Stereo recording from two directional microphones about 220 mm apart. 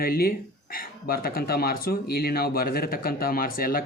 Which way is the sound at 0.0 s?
45° left (ahead or behind).